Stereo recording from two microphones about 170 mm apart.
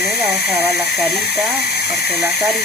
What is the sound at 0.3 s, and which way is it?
Speech, 70° left (ahead or behind).